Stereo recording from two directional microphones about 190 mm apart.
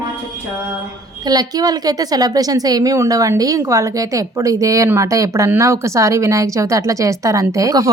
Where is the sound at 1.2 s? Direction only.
20° right (ahead or behind).